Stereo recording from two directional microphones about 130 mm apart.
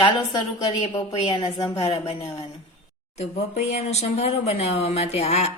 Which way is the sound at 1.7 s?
45° left (ahead or behind).